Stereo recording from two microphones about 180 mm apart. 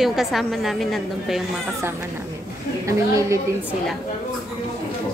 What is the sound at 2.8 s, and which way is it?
Speech, 15° right (ahead or behind).